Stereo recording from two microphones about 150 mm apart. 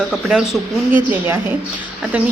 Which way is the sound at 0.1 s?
5° right (ahead or behind).